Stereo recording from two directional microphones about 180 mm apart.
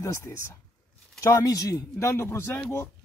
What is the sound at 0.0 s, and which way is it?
A woman's voice, 15° left (ahead or behind).